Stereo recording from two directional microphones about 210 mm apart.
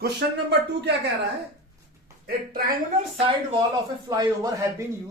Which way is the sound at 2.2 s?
45° right (ahead or behind).